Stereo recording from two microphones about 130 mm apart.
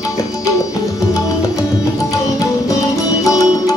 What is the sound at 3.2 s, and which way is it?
Music, 25° left (ahead or behind).